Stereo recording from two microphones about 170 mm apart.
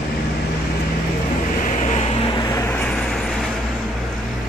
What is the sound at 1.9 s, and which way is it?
Vehicle, 35° left (ahead or behind).